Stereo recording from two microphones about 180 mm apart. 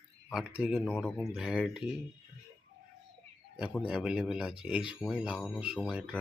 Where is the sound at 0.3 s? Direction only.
5° right (ahead or behind).